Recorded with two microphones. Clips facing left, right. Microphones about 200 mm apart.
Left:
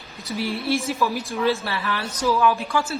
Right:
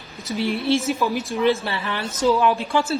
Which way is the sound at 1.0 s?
20° right (ahead or behind).